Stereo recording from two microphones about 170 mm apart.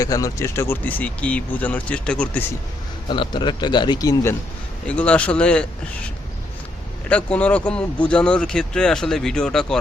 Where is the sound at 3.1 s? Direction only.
30° left (ahead or behind).